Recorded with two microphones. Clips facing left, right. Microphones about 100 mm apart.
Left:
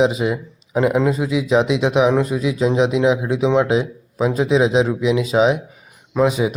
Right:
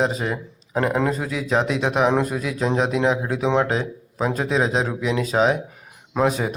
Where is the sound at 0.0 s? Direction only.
5° left (ahead or behind).